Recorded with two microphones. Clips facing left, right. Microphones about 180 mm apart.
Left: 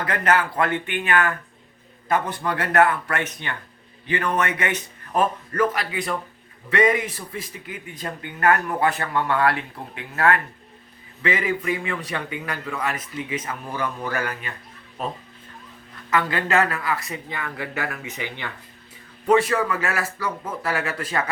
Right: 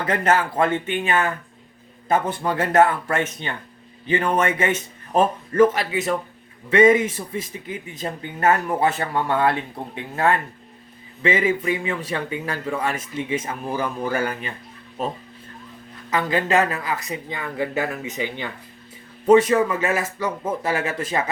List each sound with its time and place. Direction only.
0.1 s a man's voice: 25° right (ahead or behind)
2.0 s a man's voice: 25° right (ahead or behind)
16.0 s a man's voice: 20° right (ahead or behind)